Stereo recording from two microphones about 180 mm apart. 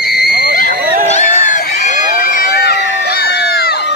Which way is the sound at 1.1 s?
45° left (ahead or behind).